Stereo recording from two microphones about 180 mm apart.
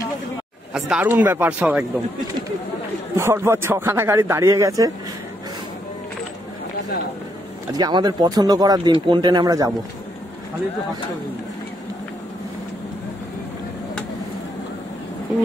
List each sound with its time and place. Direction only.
0.7 s speech: 5° right (ahead or behind)
3.2 s speech: 15° right (ahead or behind)
7.7 s speech: 20° right (ahead or behind)